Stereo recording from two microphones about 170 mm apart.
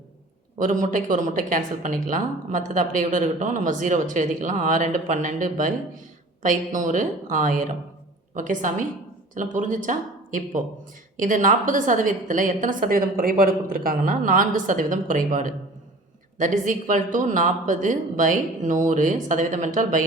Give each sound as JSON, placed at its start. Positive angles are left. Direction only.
{"t": 0.6, "sound": "speech", "side_deg": -50}